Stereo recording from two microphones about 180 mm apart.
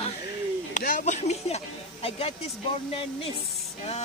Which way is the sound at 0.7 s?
45° left (ahead or behind).